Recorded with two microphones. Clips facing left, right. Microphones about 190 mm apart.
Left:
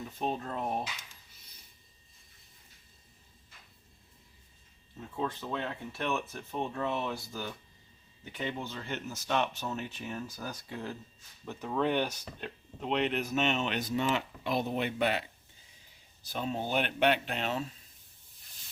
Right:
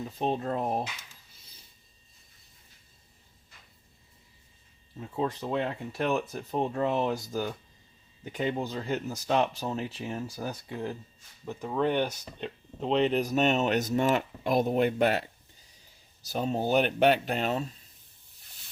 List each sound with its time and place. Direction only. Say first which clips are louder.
0.2 s speech: right 5 dB; 35° right (ahead or behind)
5.1 s speech: right 5 dB; 35° right (ahead or behind)
11.4 s speech: right 3 dB; 10° right (ahead or behind)
12.8 s speech: right 5 dB; 30° right (ahead or behind)
16.2 s speech: right 5 dB; 40° right (ahead or behind)